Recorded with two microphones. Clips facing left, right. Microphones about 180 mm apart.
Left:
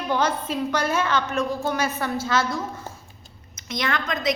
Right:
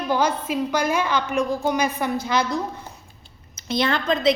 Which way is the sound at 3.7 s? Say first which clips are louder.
Right 5 dB; 30° right (ahead or behind).